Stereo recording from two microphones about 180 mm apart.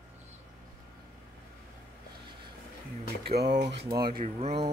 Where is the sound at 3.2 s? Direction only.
65° right (ahead or behind).